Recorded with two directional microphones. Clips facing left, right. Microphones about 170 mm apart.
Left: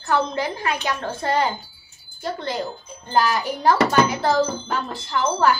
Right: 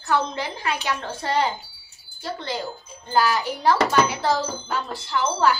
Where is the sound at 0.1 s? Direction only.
50° left (ahead or behind).